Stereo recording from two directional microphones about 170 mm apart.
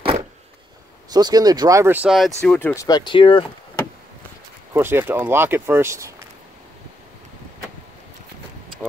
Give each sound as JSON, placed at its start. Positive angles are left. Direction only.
{"t": 1.1, "sound": "speech", "side_deg": -25}
{"t": 2.7, "sound": "speech", "side_deg": 20}
{"t": 4.7, "sound": "speech", "side_deg": -15}